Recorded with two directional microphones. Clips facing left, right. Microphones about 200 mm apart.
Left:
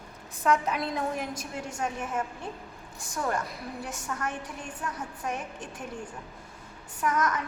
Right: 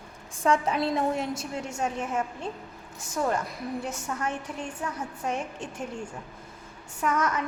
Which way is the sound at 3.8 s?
25° right (ahead or behind).